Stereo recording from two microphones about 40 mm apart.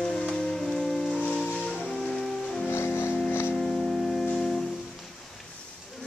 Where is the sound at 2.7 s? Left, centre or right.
Left.